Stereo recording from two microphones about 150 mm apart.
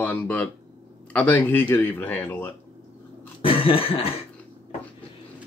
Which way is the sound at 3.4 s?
40° left (ahead or behind).